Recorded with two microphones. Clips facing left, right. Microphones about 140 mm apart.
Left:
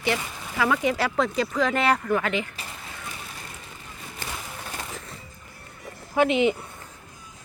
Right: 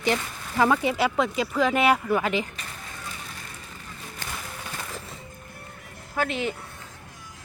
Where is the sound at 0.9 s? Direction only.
25° right (ahead or behind).